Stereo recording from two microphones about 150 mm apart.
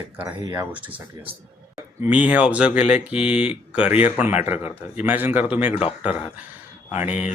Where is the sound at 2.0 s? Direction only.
10° right (ahead or behind).